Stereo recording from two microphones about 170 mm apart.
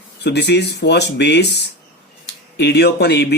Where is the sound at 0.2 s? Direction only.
85° left.